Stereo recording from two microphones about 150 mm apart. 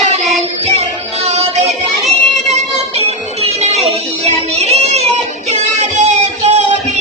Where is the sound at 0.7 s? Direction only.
45° right (ahead or behind).